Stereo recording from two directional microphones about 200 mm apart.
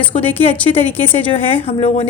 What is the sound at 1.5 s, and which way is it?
Speech, 30° left (ahead or behind).